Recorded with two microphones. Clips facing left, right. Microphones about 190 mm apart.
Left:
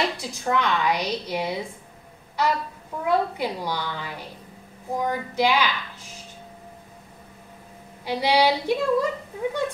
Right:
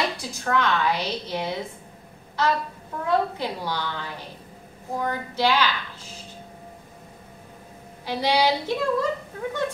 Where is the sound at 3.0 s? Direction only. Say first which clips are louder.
Left 1 dB; 10° left (ahead or behind).